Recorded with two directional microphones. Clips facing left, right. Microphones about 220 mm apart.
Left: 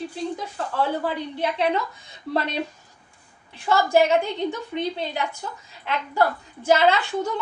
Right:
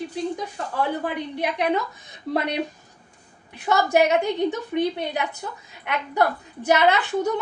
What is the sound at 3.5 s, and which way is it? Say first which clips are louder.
A woman's voice: even; 20° right (ahead or behind).